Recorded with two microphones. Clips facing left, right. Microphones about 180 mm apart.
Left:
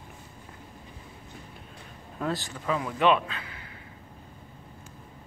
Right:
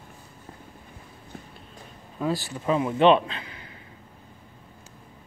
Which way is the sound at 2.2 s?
Centre (ahead or behind).